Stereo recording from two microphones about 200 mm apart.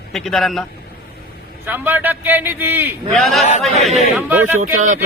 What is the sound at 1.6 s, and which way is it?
A man's voice, 10° right (ahead or behind).